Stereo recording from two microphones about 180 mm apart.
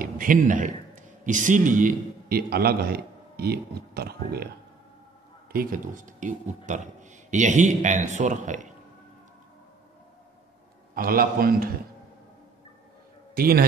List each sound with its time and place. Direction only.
0.0 s a man's voice: 50° right (ahead or behind)
5.5 s speech: 55° right (ahead or behind)
11.0 s a man's voice: 55° right (ahead or behind)
13.3 s a man's voice: 55° right (ahead or behind)